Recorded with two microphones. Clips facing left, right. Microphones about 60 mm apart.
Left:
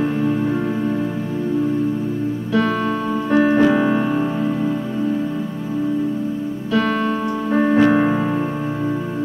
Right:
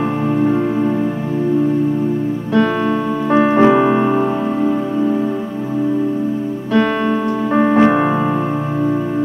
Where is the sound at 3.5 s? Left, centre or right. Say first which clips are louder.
Right 4 dB; right.